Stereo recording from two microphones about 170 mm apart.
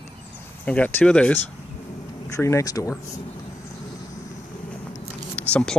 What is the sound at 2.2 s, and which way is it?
Speech, 20° left (ahead or behind).